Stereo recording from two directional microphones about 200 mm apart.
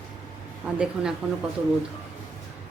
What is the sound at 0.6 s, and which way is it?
Speech, 5° right (ahead or behind).